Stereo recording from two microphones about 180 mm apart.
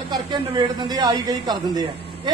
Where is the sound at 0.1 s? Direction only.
25° right (ahead or behind).